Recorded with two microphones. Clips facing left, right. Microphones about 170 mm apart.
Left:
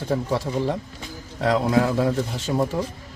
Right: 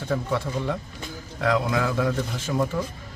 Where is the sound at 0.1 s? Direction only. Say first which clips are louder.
Left 2 dB; 35° left (ahead or behind).